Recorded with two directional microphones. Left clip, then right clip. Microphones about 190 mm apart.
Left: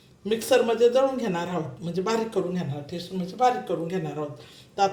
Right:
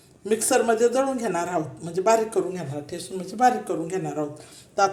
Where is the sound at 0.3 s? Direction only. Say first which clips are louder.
Right 1 dB; 15° right (ahead or behind).